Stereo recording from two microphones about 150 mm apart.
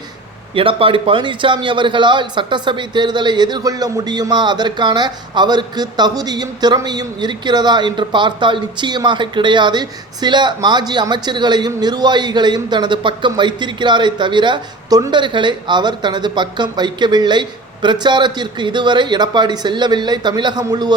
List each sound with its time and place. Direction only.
0.5 s a man's voice: 35° right (ahead or behind)